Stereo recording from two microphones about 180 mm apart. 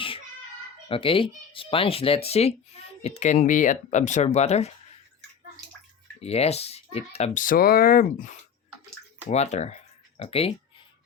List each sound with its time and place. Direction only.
0.9 s speech: 30° left (ahead or behind)
6.1 s speech: 35° left (ahead or behind); by 8.4 s 50° left (ahead or behind)
9.3 s speech: 40° left (ahead or behind)